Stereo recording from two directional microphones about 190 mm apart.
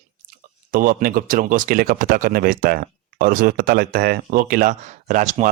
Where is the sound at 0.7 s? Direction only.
45° right (ahead or behind).